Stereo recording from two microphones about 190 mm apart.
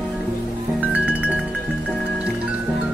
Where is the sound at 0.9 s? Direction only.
5° right (ahead or behind).